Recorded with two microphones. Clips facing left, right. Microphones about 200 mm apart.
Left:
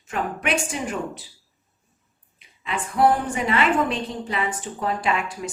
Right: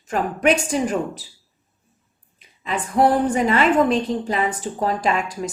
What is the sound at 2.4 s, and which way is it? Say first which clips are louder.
A woman's voice: right 3 dB; 40° right (ahead or behind).